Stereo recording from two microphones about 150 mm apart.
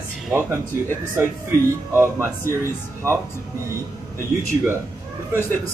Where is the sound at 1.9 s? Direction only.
20° right (ahead or behind).